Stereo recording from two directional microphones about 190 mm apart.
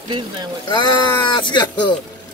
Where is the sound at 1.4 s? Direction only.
25° left (ahead or behind).